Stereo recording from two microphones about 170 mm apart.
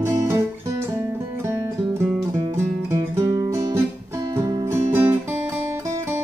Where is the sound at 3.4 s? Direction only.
20° right (ahead or behind).